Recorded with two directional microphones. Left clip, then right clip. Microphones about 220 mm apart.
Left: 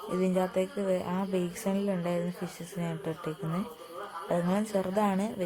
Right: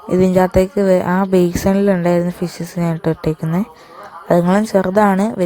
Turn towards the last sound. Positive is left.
turn(degrees=-35)  # may be behind; listen again after turning